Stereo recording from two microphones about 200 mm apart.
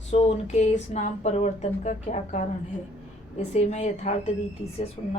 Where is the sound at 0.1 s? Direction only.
35° left (ahead or behind).